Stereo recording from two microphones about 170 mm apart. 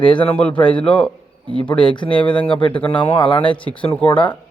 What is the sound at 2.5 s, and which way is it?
Speech, 30° left (ahead or behind).